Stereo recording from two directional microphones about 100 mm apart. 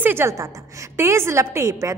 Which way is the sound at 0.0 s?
25° right (ahead or behind).